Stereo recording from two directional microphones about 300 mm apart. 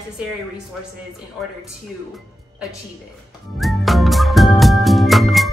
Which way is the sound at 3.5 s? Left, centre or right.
Centre.